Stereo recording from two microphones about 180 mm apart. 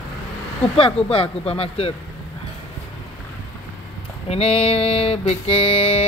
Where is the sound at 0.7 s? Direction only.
30° left (ahead or behind).